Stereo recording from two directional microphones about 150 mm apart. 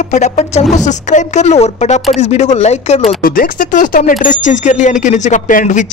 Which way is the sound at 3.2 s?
75° left (ahead or behind).